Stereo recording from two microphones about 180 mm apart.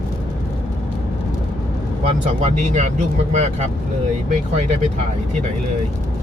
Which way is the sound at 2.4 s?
40° right (ahead or behind).